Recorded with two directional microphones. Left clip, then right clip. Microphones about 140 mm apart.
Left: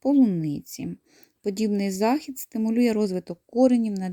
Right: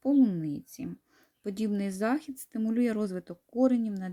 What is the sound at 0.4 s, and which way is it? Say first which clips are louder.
Speech: left 5 dB; 45° left (ahead or behind).